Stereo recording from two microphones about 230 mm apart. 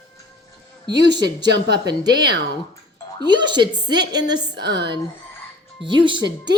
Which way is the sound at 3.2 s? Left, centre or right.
Centre.